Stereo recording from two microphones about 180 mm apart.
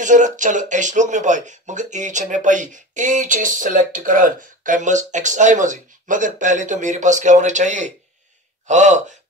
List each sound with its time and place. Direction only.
0.0 s speech: 45° right (ahead or behind)